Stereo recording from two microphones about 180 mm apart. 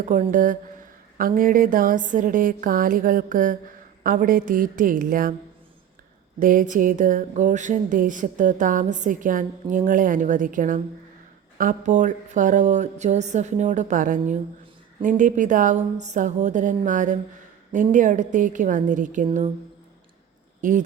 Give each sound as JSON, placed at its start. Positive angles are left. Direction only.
{"t": 0.1, "sound": "speech", "side_deg": -45}
{"t": 6.4, "sound": "speech", "side_deg": -50}
{"t": 20.6, "sound": "speech", "side_deg": -45}